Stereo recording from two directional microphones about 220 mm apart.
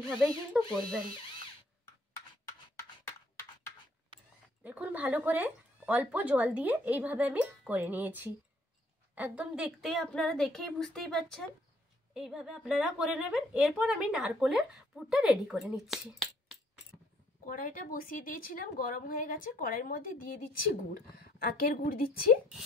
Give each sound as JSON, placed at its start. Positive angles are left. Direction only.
{"t": 0.1, "sound": "a woman's voice", "side_deg": 0}
{"t": 4.6, "sound": "a woman's voice", "side_deg": -5}
{"t": 17.5, "sound": "a woman's voice", "side_deg": 40}